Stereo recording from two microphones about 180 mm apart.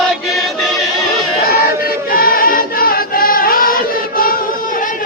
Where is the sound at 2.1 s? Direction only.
55° left (ahead or behind).